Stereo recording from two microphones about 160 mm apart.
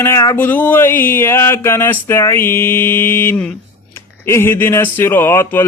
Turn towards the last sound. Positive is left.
turn(degrees=15)  # may be behind; listen again after turning